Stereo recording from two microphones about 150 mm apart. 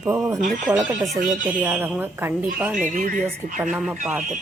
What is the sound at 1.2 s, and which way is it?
Speech, 55° right (ahead or behind).